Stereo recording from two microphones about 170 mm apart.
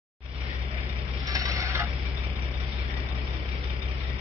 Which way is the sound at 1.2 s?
20° right (ahead or behind).